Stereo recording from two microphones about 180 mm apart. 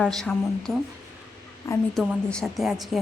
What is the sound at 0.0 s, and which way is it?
Speech, 5° left (ahead or behind).